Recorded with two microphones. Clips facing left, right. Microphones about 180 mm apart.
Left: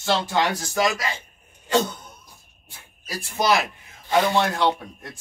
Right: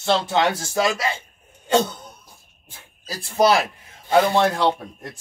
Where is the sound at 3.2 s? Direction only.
30° right (ahead or behind).